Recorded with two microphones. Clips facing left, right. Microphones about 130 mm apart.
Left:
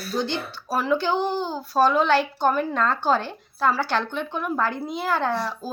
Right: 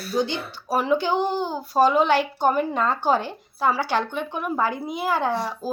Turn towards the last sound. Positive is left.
turn(degrees=-15)  # may be behind; listen again after turning